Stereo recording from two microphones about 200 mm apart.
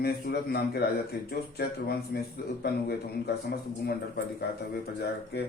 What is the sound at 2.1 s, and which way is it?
Speech, 50° left (ahead or behind).